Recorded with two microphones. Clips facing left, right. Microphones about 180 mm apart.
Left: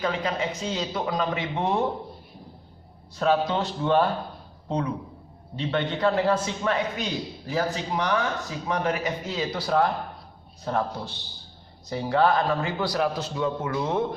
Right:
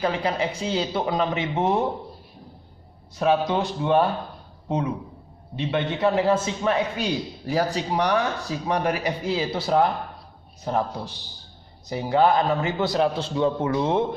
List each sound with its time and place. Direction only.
0.0 s a man's voice: 30° right (ahead or behind)
3.2 s speech: 10° right (ahead or behind)
5.5 s speech: 15° right (ahead or behind)
6.1 s a man's voice: 25° right (ahead or behind)
6.9 s a man's voice: 10° right (ahead or behind)
7.5 s a man's voice: 35° right (ahead or behind)